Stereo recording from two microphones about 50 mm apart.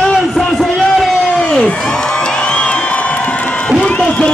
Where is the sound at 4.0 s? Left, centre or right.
Centre.